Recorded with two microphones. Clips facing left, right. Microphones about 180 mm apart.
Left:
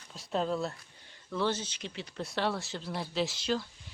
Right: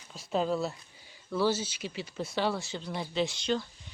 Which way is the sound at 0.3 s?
5° right (ahead or behind).